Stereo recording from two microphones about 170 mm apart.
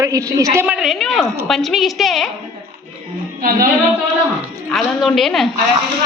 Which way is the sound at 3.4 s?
55° right (ahead or behind).